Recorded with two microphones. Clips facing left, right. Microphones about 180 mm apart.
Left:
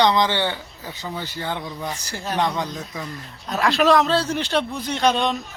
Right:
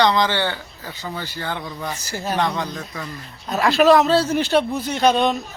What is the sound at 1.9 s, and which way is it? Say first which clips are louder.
Speech: right 6 dB; 5° right (ahead or behind).